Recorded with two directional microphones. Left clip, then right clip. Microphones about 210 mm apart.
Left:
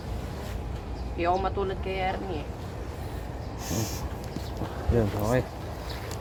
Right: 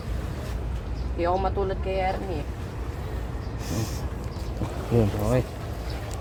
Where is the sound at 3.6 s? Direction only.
25° left (ahead or behind).